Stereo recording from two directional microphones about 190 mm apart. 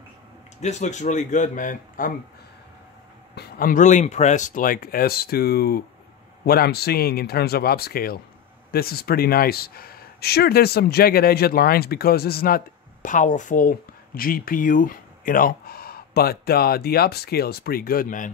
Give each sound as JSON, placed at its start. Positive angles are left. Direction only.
{"t": 0.6, "sound": "speech", "side_deg": 35}
{"t": 3.3, "sound": "speech", "side_deg": 55}